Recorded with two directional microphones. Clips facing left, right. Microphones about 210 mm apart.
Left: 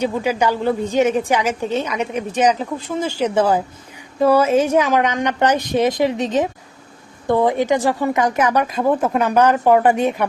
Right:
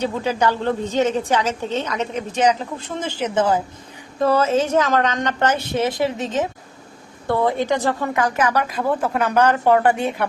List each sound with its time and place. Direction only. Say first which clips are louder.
0.0 s a woman's voice: left 2 dB; 10° left (ahead or behind)